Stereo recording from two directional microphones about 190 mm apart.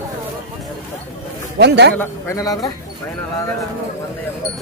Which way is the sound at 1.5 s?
60° right (ahead or behind).